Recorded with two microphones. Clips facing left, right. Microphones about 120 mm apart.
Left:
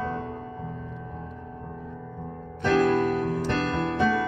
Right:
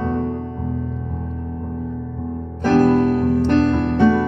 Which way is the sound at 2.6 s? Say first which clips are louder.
Right 7 dB; 40° right (ahead or behind).